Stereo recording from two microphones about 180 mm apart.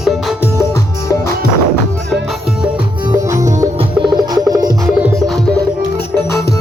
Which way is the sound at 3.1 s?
15° right (ahead or behind).